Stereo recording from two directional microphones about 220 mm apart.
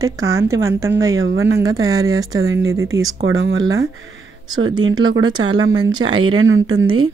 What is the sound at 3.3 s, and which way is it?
Speech, 60° right (ahead or behind).